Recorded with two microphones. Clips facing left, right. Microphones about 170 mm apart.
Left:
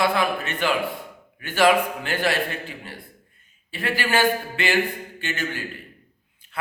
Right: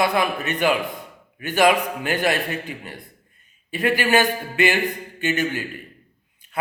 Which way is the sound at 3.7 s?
15° right (ahead or behind).